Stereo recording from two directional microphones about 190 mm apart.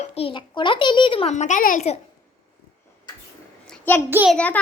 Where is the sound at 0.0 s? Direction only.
30° left (ahead or behind).